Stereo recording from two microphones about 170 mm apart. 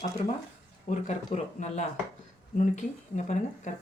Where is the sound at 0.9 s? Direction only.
45° left (ahead or behind).